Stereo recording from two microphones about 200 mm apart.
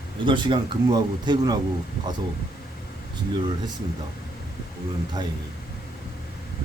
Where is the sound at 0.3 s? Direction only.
25° right (ahead or behind).